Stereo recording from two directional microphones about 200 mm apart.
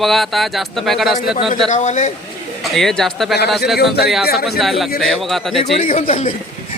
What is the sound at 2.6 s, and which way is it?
Speech, centre (ahead or behind).